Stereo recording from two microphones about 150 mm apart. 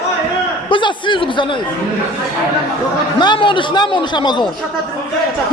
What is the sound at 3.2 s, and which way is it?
A man's voice, 30° left (ahead or behind).